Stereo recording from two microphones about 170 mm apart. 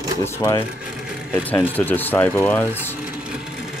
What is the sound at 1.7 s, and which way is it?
Speech, 10° left (ahead or behind).